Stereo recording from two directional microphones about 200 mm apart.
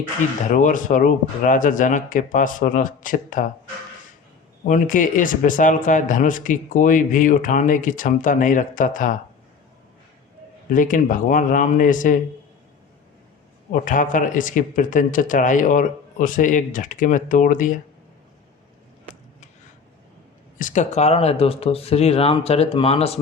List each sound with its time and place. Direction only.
0.5 s speech: 40° left (ahead or behind)
4.6 s speech: 40° left (ahead or behind)
10.7 s speech: 40° left (ahead or behind)
13.7 s speech: 40° left (ahead or behind)
20.6 s speech: 40° left (ahead or behind)